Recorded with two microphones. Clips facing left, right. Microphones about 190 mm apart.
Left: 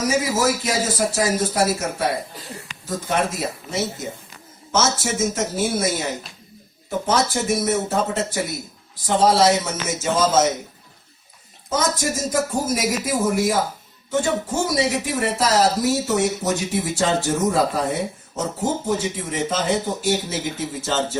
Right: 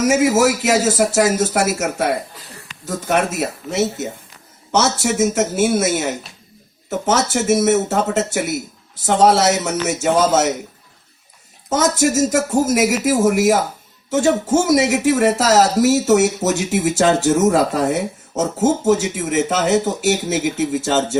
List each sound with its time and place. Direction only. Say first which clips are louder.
0.1 s speech: right 6 dB; 75° right (ahead or behind)
2.8 s speech: right 4 dB; 70° right (ahead or behind)
11.7 s speech: right 6 dB; 75° right (ahead or behind)